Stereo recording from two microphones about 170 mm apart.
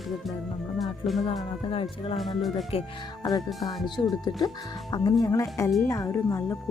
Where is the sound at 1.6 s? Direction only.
35° left (ahead or behind).